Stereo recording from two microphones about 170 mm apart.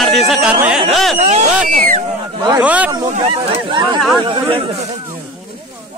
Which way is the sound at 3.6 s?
25° right (ahead or behind).